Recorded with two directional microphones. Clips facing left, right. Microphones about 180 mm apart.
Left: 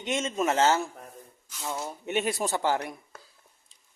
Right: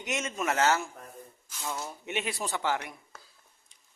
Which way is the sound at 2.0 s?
40° left (ahead or behind).